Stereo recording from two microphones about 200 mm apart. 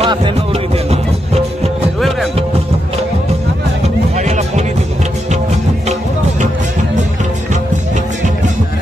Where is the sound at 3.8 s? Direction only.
35° right (ahead or behind).